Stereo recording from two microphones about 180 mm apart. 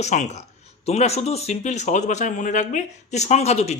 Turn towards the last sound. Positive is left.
turn(degrees=35)  # may be behind; listen again after turning